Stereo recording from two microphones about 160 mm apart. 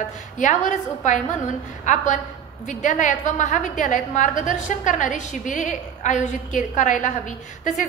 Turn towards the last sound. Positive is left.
turn(degrees=50)  # may be behind; listen again after turning